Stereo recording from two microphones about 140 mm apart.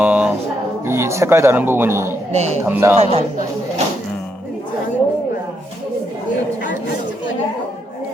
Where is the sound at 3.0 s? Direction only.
50° right (ahead or behind).